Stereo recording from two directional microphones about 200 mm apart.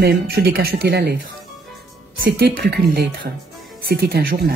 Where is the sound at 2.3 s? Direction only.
55° right (ahead or behind).